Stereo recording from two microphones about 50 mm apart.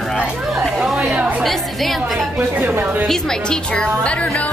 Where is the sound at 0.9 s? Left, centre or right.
Right.